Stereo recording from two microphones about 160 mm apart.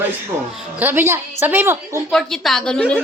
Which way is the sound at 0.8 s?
10° right (ahead or behind).